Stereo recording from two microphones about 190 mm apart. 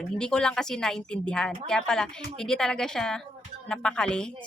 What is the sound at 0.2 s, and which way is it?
A woman's voice, 5° left (ahead or behind).